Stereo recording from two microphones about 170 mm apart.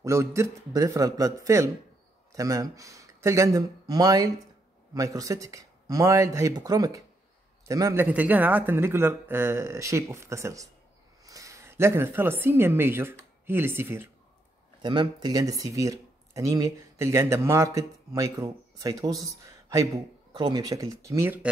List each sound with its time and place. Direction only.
0.0 s speech: 15° right (ahead or behind)
14.8 s speech: 25° right (ahead or behind)
20.3 s speech: 25° right (ahead or behind)